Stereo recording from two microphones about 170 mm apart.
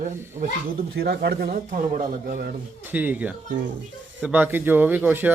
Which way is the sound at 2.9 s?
10° right (ahead or behind).